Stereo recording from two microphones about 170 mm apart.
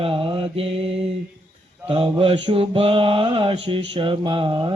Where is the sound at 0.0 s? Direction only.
35° right (ahead or behind).